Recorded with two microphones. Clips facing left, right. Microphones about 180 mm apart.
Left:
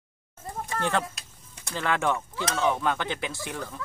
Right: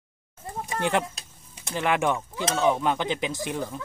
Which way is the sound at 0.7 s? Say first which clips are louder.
Right 2 dB; 15° right (ahead or behind).